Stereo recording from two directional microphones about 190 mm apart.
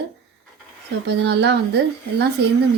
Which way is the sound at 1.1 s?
60° right (ahead or behind).